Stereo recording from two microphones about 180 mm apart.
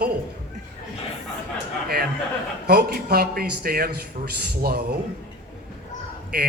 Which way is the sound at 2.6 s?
65° right (ahead or behind).